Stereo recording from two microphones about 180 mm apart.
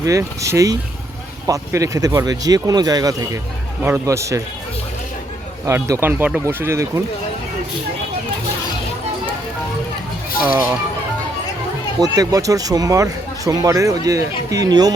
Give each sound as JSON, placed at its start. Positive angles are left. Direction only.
{"t": 0.0, "sound": "speech", "side_deg": -15}
{"t": 5.6, "sound": "speech", "side_deg": -15}
{"t": 10.4, "sound": "speech", "side_deg": -10}
{"t": 11.9, "sound": "speech", "side_deg": -20}